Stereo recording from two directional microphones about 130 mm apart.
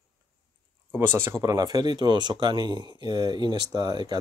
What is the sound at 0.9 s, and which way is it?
Speech, 15° right (ahead or behind).